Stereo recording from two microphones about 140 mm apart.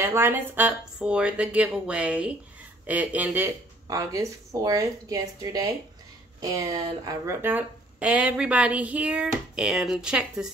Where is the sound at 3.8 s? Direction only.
20° right (ahead or behind).